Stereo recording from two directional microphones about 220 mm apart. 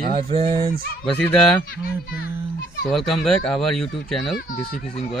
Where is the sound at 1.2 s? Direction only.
5° left (ahead or behind).